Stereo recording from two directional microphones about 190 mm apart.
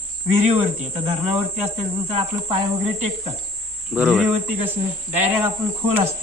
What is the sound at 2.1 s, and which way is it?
Speech, 30° right (ahead or behind).